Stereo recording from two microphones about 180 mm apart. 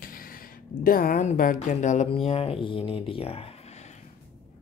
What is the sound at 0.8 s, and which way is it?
Speech, 50° left (ahead or behind).